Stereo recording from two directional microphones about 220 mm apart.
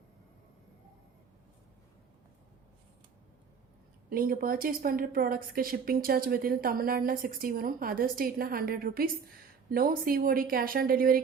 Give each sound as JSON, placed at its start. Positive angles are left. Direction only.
{"t": 4.1, "sound": "a woman's voice", "side_deg": -40}